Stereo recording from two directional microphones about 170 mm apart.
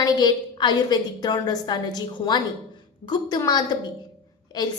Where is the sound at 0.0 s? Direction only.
25° left (ahead or behind).